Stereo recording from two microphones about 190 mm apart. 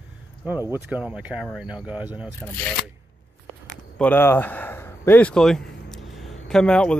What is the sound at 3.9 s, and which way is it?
A man's voice, 10° left (ahead or behind).